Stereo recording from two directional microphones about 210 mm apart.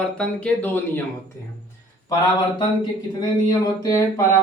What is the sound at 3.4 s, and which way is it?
Speech, 15° left (ahead or behind).